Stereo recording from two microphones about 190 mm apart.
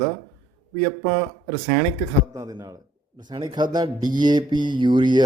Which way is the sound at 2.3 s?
15° right (ahead or behind).